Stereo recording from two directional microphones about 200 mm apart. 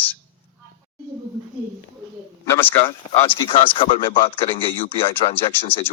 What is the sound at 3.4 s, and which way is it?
Speech, 25° left (ahead or behind).